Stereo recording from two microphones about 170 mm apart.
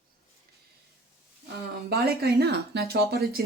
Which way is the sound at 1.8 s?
65° right (ahead or behind).